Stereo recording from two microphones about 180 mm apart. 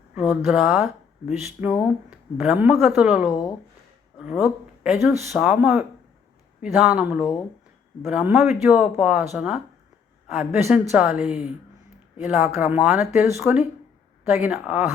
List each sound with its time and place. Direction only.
0.1 s speech: 5° right (ahead or behind)